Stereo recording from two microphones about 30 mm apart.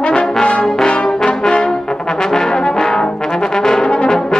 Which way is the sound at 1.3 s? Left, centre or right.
Left.